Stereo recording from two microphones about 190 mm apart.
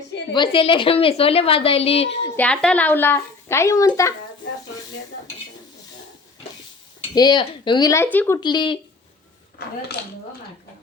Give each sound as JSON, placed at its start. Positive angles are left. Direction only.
{"t": 0.3, "sound": "a woman's voice", "side_deg": 25}
{"t": 2.3, "sound": "speech", "side_deg": 5}
{"t": 7.1, "sound": "a woman's voice", "side_deg": 20}
{"t": 8.4, "sound": "a woman's voice", "side_deg": 25}
{"t": 10.0, "sound": "speech", "side_deg": 55}